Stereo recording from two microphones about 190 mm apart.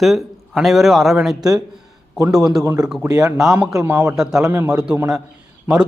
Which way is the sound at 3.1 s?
15° right (ahead or behind).